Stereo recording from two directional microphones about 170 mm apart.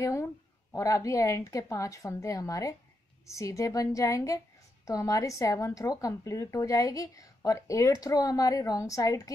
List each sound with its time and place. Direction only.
0.0 s a woman's voice: 20° left (ahead or behind)